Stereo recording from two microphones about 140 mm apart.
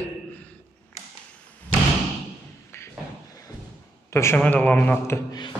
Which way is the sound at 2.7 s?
15° left (ahead or behind).